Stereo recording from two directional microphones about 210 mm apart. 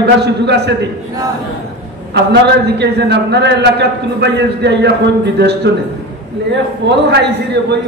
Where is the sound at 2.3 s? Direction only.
50° right (ahead or behind).